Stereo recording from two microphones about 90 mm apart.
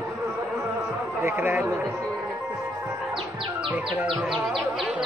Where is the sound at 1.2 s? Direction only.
30° right (ahead or behind).